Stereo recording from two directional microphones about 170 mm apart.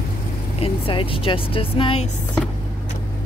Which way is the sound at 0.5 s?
35° left (ahead or behind).